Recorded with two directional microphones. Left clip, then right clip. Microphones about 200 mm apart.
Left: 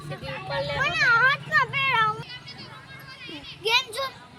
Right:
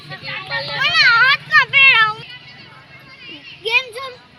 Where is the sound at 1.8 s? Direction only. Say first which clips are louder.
Right 11 dB; 45° left (ahead or behind).